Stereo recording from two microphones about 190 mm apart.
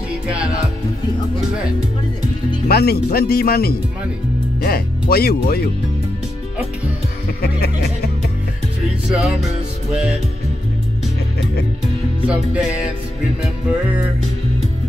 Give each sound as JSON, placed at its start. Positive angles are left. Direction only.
{"t": 2.7, "sound": "speech", "side_deg": 55}
{"t": 7.4, "sound": "music", "side_deg": 55}
{"t": 9.1, "sound": "music", "side_deg": 0}
{"t": 12.3, "sound": "music", "side_deg": -5}